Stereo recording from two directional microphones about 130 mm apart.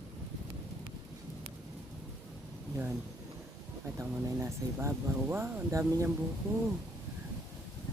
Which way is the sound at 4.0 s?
20° right (ahead or behind).